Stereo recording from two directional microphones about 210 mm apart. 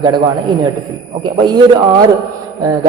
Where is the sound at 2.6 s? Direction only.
15° right (ahead or behind).